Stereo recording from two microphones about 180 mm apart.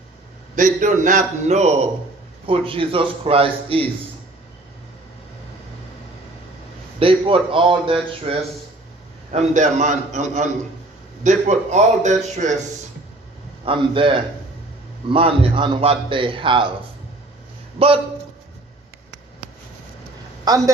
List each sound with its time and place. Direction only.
0.5 s a man's voice: 45° right (ahead or behind); by 3.8 s 30° right (ahead or behind)
7.0 s speech: 30° right (ahead or behind)
9.3 s a man's voice: 40° right (ahead or behind)
13.7 s speech: 30° right (ahead or behind)
15.1 s speech: 30° right (ahead or behind)
17.7 s a man's voice: 30° right (ahead or behind)
20.5 s speech: 20° right (ahead or behind)